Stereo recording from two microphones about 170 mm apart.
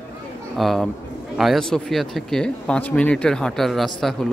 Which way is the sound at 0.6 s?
Centre (ahead or behind).